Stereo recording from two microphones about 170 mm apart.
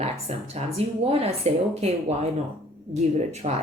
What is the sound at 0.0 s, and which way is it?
A woman's voice, 40° right (ahead or behind).